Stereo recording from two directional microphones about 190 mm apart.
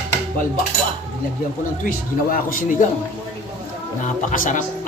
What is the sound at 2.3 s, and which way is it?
Speech, 45° left (ahead or behind).